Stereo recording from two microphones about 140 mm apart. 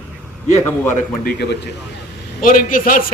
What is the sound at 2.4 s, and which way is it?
Speech, 75° left (ahead or behind).